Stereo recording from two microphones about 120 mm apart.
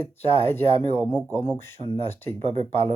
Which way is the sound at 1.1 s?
15° left (ahead or behind).